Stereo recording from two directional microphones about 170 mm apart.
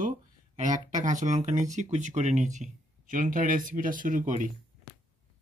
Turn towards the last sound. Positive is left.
turn(degrees=-50)  # may be behind; listen again after turning